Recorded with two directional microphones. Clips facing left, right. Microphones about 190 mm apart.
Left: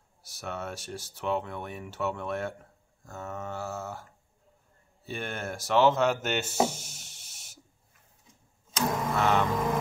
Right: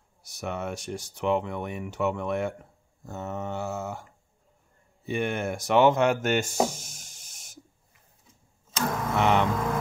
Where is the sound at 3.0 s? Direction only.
20° right (ahead or behind).